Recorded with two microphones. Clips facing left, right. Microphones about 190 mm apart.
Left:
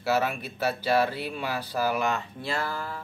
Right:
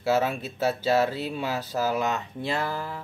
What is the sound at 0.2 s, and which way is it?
Speech, 25° right (ahead or behind).